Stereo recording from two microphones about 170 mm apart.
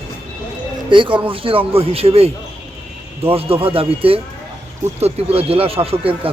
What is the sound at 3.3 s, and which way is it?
Speech, 35° right (ahead or behind).